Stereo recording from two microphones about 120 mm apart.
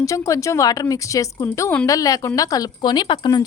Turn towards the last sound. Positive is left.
turn(degrees=40)  # may be behind; listen again after turning